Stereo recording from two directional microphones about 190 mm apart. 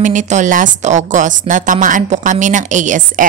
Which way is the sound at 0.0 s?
40° right (ahead or behind).